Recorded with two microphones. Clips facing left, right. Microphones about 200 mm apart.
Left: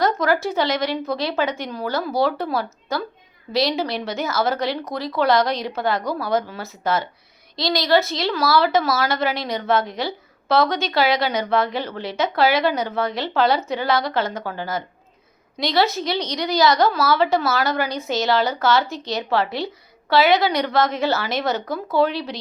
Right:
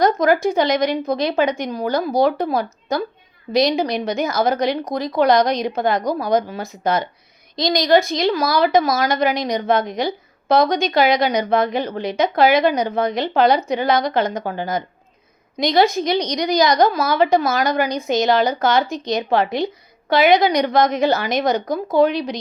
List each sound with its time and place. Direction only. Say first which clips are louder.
0.0 s a woman's voice: right 4 dB; 15° right (ahead or behind)